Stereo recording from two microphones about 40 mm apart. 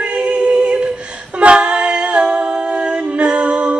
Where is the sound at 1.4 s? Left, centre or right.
Right.